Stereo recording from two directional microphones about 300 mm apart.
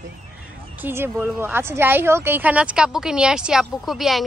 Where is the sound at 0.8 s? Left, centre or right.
Centre.